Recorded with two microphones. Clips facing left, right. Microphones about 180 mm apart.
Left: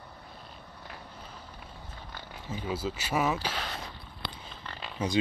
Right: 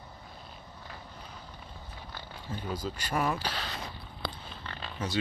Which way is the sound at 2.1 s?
5° left (ahead or behind).